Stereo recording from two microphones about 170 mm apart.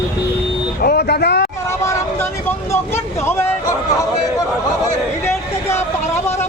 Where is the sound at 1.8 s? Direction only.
15° left (ahead or behind).